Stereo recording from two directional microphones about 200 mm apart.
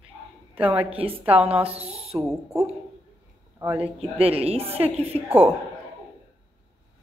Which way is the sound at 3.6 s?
10° right (ahead or behind).